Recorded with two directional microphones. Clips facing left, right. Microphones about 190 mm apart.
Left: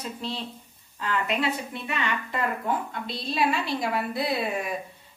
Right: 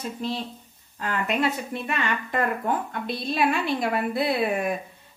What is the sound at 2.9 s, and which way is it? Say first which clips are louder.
A woman's voice: right 3 dB; 50° right (ahead or behind).